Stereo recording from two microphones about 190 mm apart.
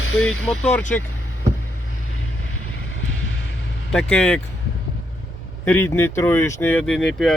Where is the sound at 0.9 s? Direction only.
5° left (ahead or behind).